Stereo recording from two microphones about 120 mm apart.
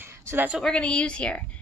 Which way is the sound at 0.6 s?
5° left (ahead or behind).